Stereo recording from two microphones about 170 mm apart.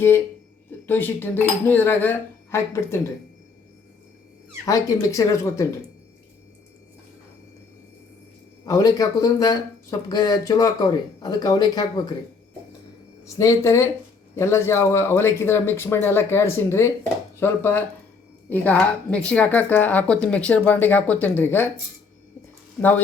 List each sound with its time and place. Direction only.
0.9 s speech: 10° left (ahead or behind)
4.6 s speech: 20° left (ahead or behind)
8.6 s speech: 20° left (ahead or behind)
13.2 s speech: 20° left (ahead or behind)